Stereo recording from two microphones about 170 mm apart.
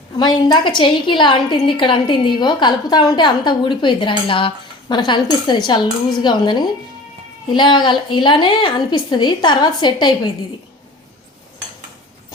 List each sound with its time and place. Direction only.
0.2 s a woman's voice: 25° left (ahead or behind)